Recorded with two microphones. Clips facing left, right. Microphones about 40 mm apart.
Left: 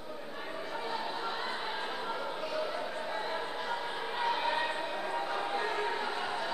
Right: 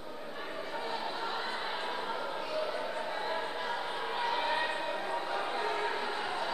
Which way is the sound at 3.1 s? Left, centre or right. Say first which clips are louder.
Right 1 dB; centre.